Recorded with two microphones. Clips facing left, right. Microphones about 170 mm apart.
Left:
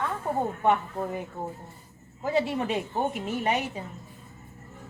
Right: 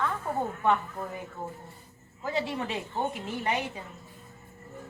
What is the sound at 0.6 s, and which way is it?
Speech, 20° left (ahead or behind).